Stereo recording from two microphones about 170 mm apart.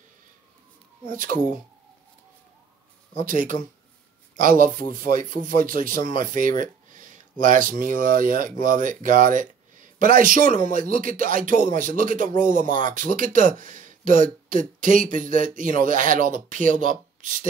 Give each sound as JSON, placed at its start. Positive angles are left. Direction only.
{"t": 1.1, "sound": "a man's voice", "side_deg": -55}
{"t": 3.2, "sound": "a man's voice", "side_deg": -50}